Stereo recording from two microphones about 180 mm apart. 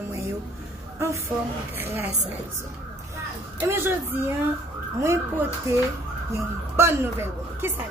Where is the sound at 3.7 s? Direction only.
10° right (ahead or behind).